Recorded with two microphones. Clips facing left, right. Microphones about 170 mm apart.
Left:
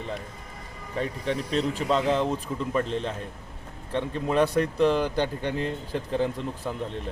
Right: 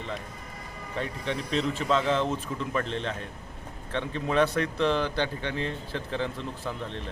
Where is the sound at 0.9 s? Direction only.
40° left (ahead or behind).